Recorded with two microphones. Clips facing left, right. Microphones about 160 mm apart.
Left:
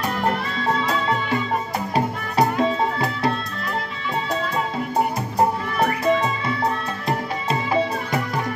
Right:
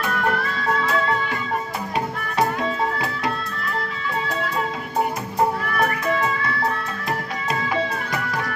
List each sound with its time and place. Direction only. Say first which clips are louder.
2.0 s music: left 2 dB; 35° left (ahead or behind)
5.8 s music: left 4 dB; 20° left (ahead or behind)